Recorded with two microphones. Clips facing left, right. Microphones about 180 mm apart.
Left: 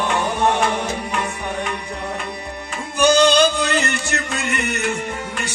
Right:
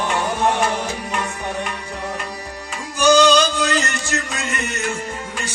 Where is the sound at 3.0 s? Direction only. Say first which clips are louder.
Even; 55° left (ahead or behind).